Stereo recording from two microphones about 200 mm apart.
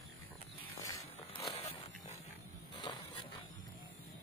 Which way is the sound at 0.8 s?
15° left (ahead or behind).